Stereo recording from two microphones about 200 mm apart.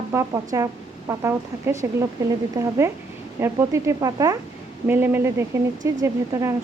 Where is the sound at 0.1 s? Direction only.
15° right (ahead or behind).